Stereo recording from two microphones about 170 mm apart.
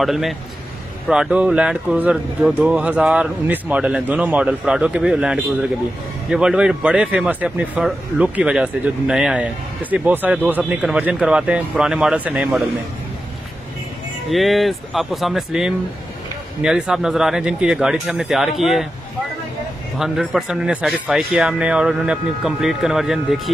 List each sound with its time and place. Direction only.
0.0 s speech: centre (ahead or behind)
14.3 s speech: centre (ahead or behind)
20.0 s speech: centre (ahead or behind)